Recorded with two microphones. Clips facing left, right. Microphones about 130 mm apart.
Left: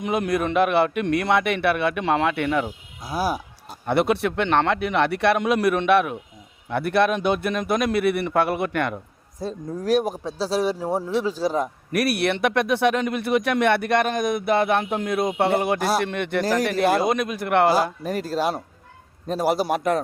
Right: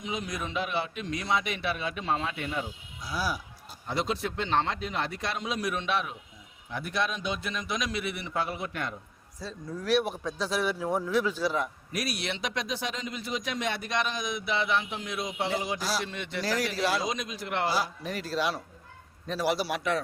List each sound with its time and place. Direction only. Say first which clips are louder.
0.0 s speech: left 12 dB; 60° left (ahead or behind)
3.0 s speech: left 7 dB; 50° left (ahead or behind); by 9.0 s 70° left (ahead or behind)
9.4 s speech: left 8 dB; 50° left (ahead or behind)
11.9 s a man's voice: left 11 dB; 60° left (ahead or behind); by 20.0 s 45° left (ahead or behind)